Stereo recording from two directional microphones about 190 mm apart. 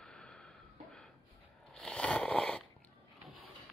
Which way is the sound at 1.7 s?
5° left (ahead or behind).